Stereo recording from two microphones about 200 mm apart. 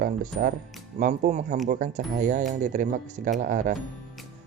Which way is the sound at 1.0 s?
40° right (ahead or behind).